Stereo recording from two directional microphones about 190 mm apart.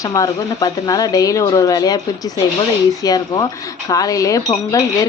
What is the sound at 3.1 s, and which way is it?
Speech, 20° left (ahead or behind).